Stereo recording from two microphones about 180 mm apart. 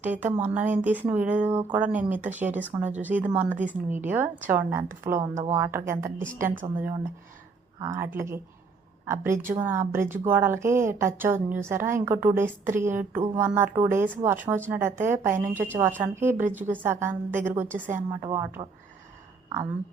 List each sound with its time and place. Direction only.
0.0 s a woman's voice: 10° right (ahead or behind)
15.4 s speech: 45° right (ahead or behind)
15.6 s a woman's voice: 10° right (ahead or behind)